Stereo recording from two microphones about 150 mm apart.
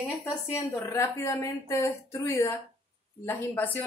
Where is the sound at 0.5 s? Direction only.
20° left (ahead or behind).